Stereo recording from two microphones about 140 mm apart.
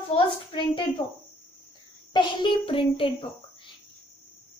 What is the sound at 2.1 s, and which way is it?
A woman's voice, 35° left (ahead or behind).